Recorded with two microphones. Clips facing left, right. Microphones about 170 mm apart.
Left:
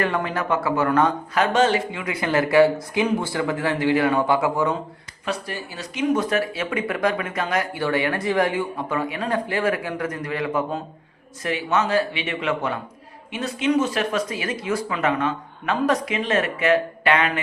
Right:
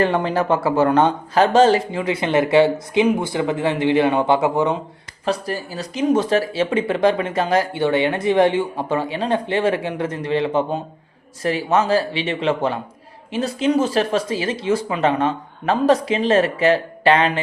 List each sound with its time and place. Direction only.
0.0 s speech: 30° right (ahead or behind)
5.2 s speech: 35° right (ahead or behind)